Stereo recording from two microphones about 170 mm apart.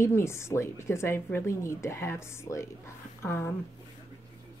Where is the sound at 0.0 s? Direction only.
15° left (ahead or behind).